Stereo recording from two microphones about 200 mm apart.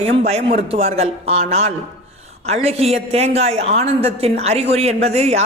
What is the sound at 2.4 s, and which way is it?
A woman's voice, 30° right (ahead or behind).